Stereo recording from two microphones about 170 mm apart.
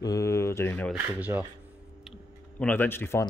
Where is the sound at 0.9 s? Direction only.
10° right (ahead or behind).